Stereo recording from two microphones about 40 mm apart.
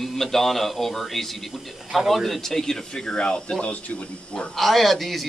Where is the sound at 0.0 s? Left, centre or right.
Centre.